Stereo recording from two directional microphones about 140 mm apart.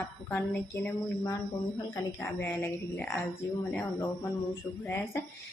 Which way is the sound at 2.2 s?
20° left (ahead or behind).